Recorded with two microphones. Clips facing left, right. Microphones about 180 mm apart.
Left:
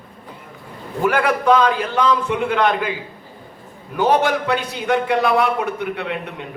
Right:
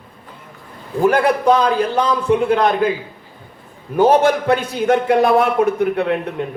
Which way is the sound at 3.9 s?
45° right (ahead or behind).